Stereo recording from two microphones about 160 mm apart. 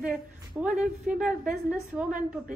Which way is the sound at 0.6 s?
5° right (ahead or behind).